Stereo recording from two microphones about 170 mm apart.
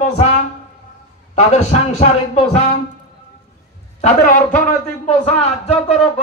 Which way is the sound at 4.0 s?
50° left (ahead or behind).